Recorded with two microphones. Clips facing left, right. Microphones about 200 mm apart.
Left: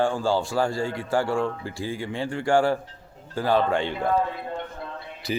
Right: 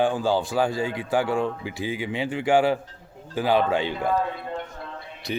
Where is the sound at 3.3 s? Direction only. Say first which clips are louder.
Right 1 dB; 10° right (ahead or behind).